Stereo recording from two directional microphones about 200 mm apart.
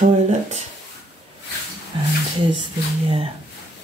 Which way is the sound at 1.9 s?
25° right (ahead or behind).